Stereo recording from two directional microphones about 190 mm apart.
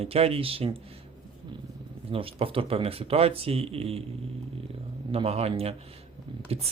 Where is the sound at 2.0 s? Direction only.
30° right (ahead or behind).